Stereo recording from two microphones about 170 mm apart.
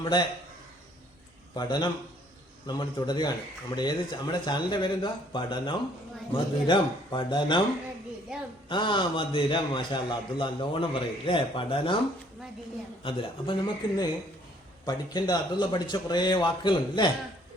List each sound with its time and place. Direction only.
0.0 s a man's voice: 25° left (ahead or behind)
1.5 s a man's voice: 25° left (ahead or behind)
8.7 s a man's voice: 30° left (ahead or behind)
13.0 s a man's voice: 30° left (ahead or behind)